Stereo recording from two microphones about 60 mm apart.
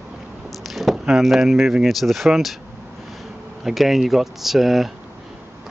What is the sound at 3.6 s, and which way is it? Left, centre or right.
Speech, centre.